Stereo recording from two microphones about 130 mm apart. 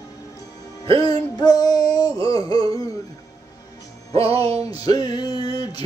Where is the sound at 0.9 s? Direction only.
30° left (ahead or behind).